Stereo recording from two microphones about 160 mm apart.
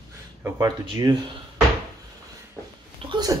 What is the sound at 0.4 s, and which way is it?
Speech, 20° right (ahead or behind).